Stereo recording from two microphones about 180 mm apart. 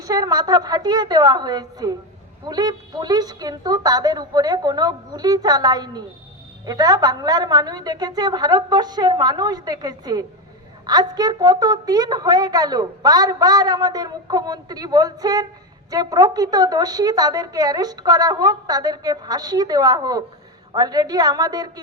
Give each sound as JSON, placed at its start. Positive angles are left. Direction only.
{"t": 0.0, "sound": "a woman's voice", "side_deg": -20}